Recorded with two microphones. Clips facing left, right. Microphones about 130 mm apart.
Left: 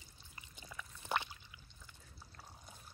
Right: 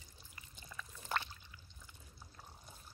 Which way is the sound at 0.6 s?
15° left (ahead or behind).